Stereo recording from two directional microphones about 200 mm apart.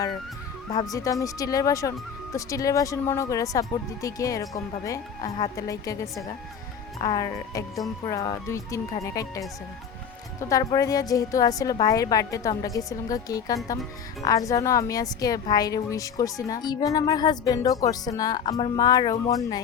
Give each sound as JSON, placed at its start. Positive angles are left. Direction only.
{"t": 0.7, "sound": "speech", "side_deg": 20}
{"t": 10.5, "sound": "speech", "side_deg": 15}